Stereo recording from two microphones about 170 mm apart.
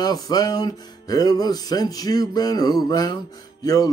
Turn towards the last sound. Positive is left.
turn(degrees=20)  # may be behind; listen again after turning